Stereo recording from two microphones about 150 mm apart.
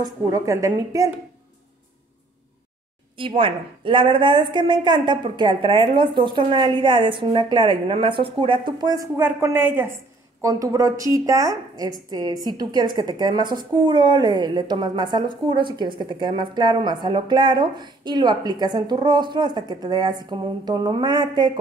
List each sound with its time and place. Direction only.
0.0 s a woman's voice: 20° right (ahead or behind)
3.2 s a woman's voice: 35° right (ahead or behind)